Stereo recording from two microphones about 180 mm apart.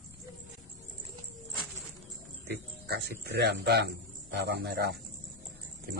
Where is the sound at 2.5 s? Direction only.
65° right (ahead or behind).